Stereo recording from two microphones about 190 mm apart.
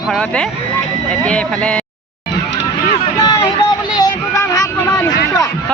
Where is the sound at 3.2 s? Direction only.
20° left (ahead or behind).